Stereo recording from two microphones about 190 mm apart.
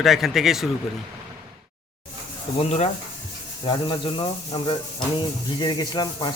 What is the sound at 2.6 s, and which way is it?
Speech, 35° left (ahead or behind).